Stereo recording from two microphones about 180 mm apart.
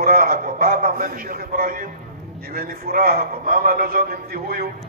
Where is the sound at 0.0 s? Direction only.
55° right (ahead or behind).